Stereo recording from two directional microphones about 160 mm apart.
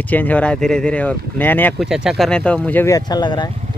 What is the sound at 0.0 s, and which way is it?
Speech, 10° left (ahead or behind).